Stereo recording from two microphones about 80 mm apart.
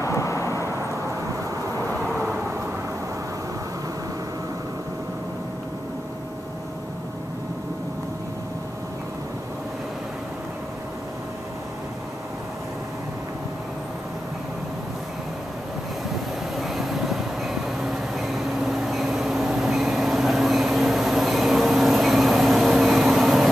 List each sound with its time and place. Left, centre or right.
0.0 s vehicle: left
16.5 s train: centre